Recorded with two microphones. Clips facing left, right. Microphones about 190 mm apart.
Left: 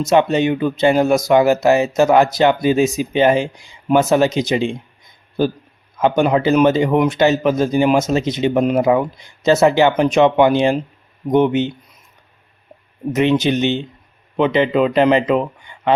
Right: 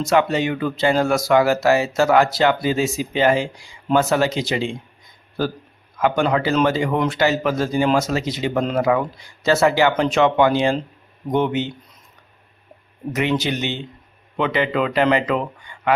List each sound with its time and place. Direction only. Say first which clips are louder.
0.0 s speech: left 4 dB; 20° left (ahead or behind)
6.0 s speech: left 4 dB; 20° left (ahead or behind)
13.1 s speech: left 6 dB; 20° left (ahead or behind)